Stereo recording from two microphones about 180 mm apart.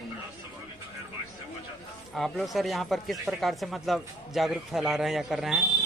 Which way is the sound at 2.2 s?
Centre (ahead or behind).